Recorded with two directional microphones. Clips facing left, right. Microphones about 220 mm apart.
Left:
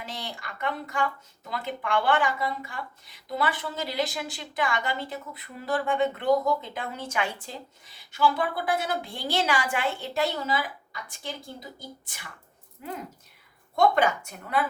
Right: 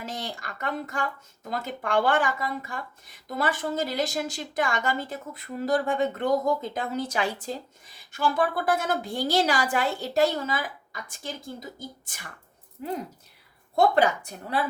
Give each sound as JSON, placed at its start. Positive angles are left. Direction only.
{"t": 0.0, "sound": "speech", "side_deg": -45}
{"t": 13.7, "sound": "a woman's voice", "side_deg": -35}